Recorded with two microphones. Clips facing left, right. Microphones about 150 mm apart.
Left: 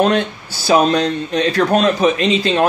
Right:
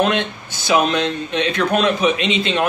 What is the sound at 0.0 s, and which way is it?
Speech, 35° left (ahead or behind).